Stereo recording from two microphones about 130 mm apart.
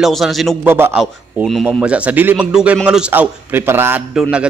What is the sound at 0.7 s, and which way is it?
Speech, 15° right (ahead or behind).